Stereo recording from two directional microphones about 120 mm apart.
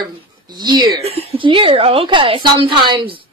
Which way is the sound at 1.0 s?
55° right (ahead or behind).